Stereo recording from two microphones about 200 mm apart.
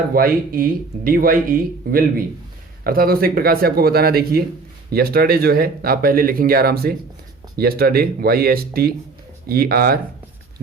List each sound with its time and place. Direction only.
0.1 s speech: 45° right (ahead or behind)